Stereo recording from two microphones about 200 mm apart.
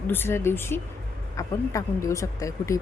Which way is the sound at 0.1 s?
10° left (ahead or behind).